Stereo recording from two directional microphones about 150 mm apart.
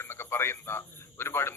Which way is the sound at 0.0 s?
15° left (ahead or behind).